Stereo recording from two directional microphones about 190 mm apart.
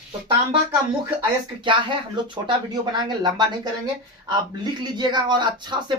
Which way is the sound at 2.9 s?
20° right (ahead or behind).